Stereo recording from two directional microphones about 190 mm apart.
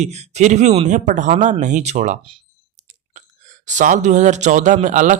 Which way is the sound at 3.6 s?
40° right (ahead or behind).